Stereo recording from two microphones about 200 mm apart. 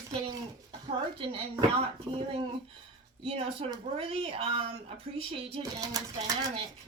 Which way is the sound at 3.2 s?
30° right (ahead or behind).